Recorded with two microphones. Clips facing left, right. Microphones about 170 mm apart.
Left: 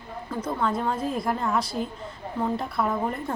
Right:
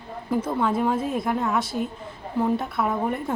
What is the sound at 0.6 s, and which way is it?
A woman's voice, 5° right (ahead or behind).